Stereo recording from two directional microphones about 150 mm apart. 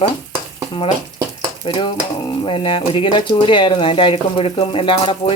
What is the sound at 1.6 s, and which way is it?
Speech, 30° left (ahead or behind).